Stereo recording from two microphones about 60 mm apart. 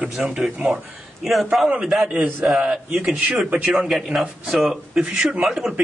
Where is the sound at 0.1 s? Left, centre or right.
Centre.